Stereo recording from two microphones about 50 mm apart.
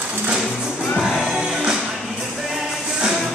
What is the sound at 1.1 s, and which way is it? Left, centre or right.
Music, centre.